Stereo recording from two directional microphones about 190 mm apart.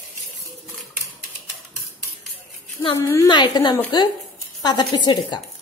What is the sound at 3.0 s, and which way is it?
A woman's voice, 15° left (ahead or behind).